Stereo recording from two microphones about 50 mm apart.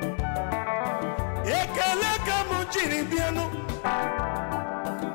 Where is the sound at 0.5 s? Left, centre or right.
Left.